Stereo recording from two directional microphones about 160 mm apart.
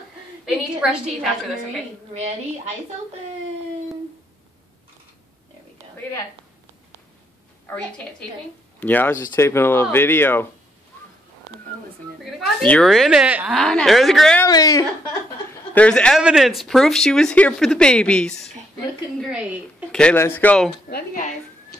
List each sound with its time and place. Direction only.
0.7 s speech: 5° right (ahead or behind)
2.1 s a woman's voice: 45° right (ahead or behind)
8.7 s speech: 10° left (ahead or behind)
12.4 s speech: 5° left (ahead or behind)
14.4 s speech: 20° left (ahead or behind)
15.7 s speech: 5° left (ahead or behind)
19.9 s speech: 5° left (ahead or behind)
20.9 s a woman's voice: 55° left (ahead or behind)